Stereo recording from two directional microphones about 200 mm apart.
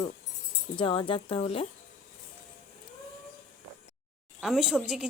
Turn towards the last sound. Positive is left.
turn(degrees=-5)  # may be behind; listen again after turning